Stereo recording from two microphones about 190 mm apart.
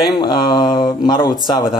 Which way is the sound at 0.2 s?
25° left (ahead or behind).